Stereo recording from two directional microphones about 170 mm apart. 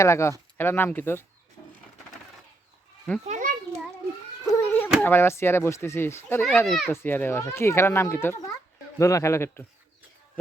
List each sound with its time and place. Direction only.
0.0 s a child's voice: 15° left (ahead or behind)
3.2 s children playing: 45° right (ahead or behind)
4.4 s a sound: 10° left (ahead or behind)
4.9 s a child's voice: 15° left (ahead or behind)
6.7 s a child's voice: centre (ahead or behind)
6.9 s a child's voice: 10° left (ahead or behind)